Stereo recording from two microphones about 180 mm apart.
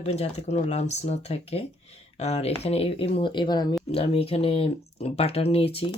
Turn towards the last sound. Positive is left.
turn(degrees=35)  # may be behind; listen again after turning